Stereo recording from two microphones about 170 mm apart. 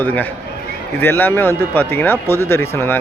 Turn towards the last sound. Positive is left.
turn(degrees=15)  # may be behind; listen again after turning